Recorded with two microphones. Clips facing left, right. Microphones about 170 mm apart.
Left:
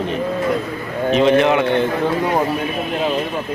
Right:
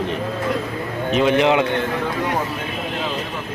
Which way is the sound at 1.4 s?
15° right (ahead or behind).